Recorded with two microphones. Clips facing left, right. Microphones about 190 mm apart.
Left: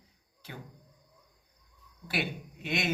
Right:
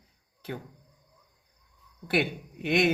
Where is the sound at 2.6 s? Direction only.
55° right (ahead or behind).